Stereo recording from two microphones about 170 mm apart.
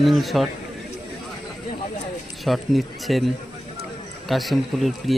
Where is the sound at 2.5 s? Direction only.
Centre (ahead or behind).